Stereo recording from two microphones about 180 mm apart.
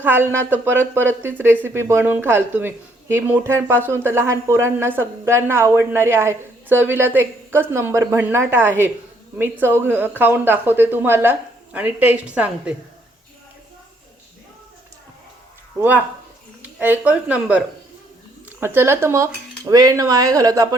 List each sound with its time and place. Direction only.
0.0 s speech: 10° right (ahead or behind)
16.7 s speech: 10° right (ahead or behind)
18.6 s speech: 15° right (ahead or behind)